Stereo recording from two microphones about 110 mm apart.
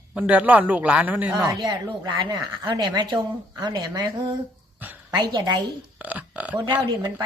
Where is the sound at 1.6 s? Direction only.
40° right (ahead or behind).